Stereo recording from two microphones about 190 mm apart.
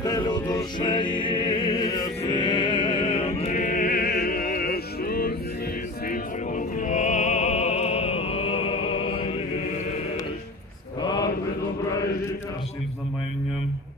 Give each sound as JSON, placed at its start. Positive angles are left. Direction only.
{"t": 0.0, "sound": "music", "side_deg": 20}
{"t": 6.0, "sound": "opera", "side_deg": 40}